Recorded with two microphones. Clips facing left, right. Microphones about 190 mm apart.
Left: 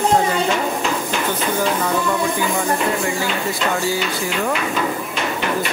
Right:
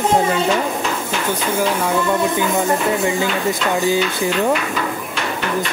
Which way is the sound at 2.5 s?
20° right (ahead or behind).